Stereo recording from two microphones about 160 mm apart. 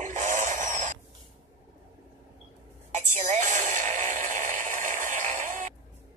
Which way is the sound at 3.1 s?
50° right (ahead or behind).